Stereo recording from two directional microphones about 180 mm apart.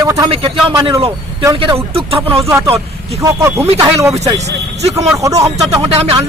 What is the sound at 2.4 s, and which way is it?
Speech, 15° right (ahead or behind).